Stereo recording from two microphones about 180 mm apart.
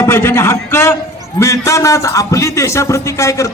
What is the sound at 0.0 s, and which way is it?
A man's voice, 15° left (ahead or behind).